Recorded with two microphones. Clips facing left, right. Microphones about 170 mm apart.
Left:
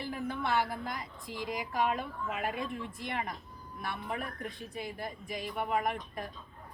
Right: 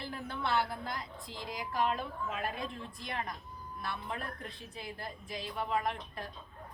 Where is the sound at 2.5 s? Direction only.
65° left (ahead or behind).